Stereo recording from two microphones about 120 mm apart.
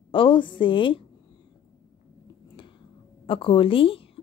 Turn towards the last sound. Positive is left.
turn(degrees=50)  # may be behind; listen again after turning